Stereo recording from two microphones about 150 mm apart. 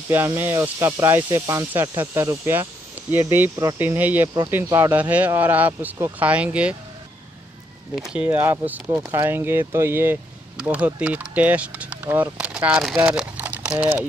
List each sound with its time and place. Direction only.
0.1 s speech: 15° right (ahead or behind)
4.6 s speech: 25° right (ahead or behind)
4.9 s speech: 10° right (ahead or behind)
8.0 s speech: 10° right (ahead or behind)